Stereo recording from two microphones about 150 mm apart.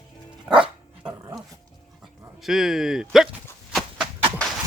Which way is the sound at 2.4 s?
Centre (ahead or behind).